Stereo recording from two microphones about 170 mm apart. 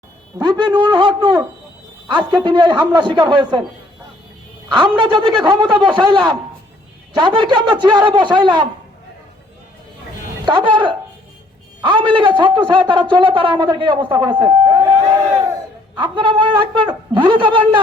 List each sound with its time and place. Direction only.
0.3 s a man's voice: 25° right (ahead or behind)
4.7 s a man's voice: 25° right (ahead or behind)
10.4 s a man's voice: 25° right (ahead or behind)
14.4 s a sound: 25° right (ahead or behind)
16.0 s a man's voice: 30° right (ahead or behind)